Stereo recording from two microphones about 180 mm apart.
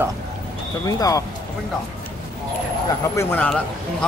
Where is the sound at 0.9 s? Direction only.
20° left (ahead or behind).